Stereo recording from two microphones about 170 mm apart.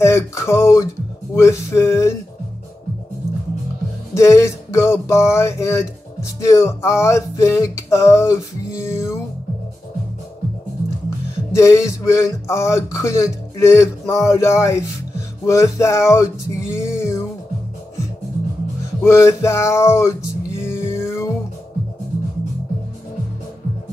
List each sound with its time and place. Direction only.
0.0 s speech: 15° left (ahead or behind)
4.1 s speech: 15° left (ahead or behind)
11.5 s speech: 15° left (ahead or behind)
15.4 s a sound: 15° left (ahead or behind)
19.0 s speech: 15° left (ahead or behind)
20.6 s a sound: 15° left (ahead or behind)